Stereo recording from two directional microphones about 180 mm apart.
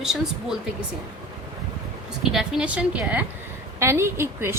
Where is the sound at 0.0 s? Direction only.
Centre (ahead or behind).